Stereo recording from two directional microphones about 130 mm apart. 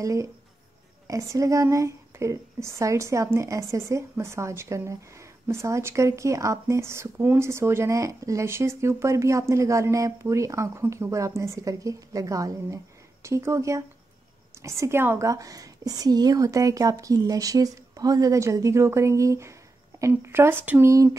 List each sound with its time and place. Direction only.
0.0 s a woman's voice: 25° right (ahead or behind)
20.9 s a woman's voice: 25° right (ahead or behind)